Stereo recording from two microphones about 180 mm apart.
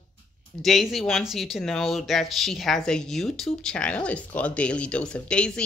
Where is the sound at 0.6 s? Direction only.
Centre (ahead or behind).